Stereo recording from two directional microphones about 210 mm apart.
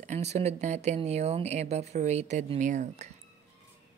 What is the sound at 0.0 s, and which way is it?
Speech, 35° right (ahead or behind).